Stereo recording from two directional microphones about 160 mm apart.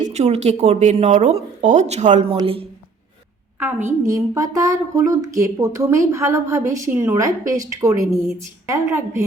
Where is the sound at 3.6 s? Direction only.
15° right (ahead or behind).